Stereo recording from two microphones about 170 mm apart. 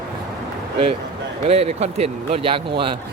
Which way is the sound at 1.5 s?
35° right (ahead or behind).